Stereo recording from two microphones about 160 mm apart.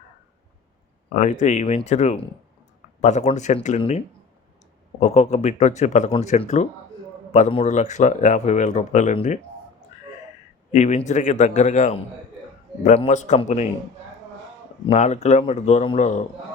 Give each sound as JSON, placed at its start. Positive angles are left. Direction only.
{"t": 1.1, "sound": "speech", "side_deg": 50}
{"t": 10.7, "sound": "speech", "side_deg": 45}
{"t": 14.8, "sound": "speech", "side_deg": 45}